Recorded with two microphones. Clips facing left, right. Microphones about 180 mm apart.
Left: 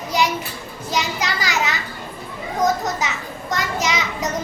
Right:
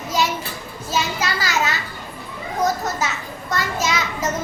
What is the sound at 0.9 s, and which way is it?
Speech, 15° left (ahead or behind).